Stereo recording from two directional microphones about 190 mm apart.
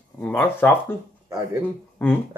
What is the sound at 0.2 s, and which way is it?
Speech, 10° left (ahead or behind).